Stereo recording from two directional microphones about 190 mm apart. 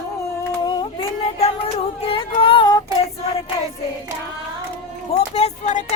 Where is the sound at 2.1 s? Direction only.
25° left (ahead or behind).